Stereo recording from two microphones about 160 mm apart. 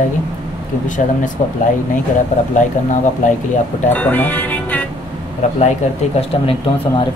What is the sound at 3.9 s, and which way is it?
Speech, 10° left (ahead or behind).